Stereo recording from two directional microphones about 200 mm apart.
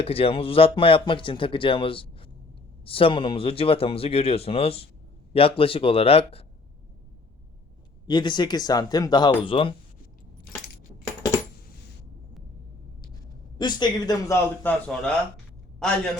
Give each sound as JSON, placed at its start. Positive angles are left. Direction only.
{"t": 0.0, "sound": "speech", "side_deg": 30}
{"t": 8.0, "sound": "speech", "side_deg": 20}
{"t": 13.6, "sound": "speech", "side_deg": 20}